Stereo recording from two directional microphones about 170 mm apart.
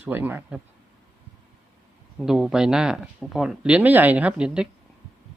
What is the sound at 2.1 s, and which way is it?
Speech, centre (ahead or behind).